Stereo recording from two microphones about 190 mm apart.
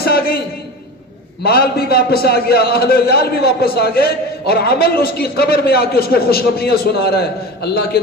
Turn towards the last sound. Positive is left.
turn(degrees=55)  # may be behind; listen again after turning